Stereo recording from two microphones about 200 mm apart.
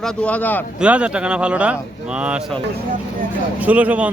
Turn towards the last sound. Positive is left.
turn(degrees=-5)  # may be behind; listen again after turning